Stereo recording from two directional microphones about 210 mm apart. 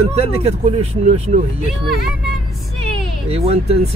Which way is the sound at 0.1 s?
30° right (ahead or behind).